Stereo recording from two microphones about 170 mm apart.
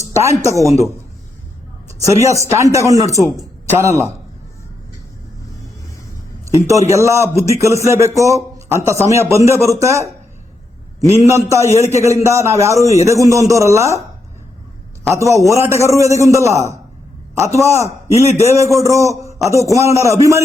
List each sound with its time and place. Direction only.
0.2 s speech: 20° right (ahead or behind)
1.9 s a sound: 20° right (ahead or behind)
2.2 s a man's voice: 20° right (ahead or behind)
6.9 s a man's voice: 15° right (ahead or behind)
15.1 s a man's voice: 15° right (ahead or behind)